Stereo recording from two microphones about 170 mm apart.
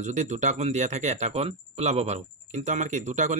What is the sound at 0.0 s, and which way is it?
Speech, 45° right (ahead or behind).